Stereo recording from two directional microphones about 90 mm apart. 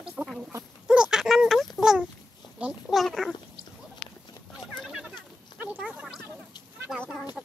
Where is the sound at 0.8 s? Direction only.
10° right (ahead or behind).